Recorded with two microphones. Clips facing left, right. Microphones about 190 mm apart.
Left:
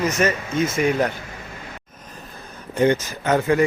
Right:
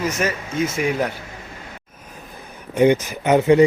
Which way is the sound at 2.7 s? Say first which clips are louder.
Right 3 dB; 15° right (ahead or behind).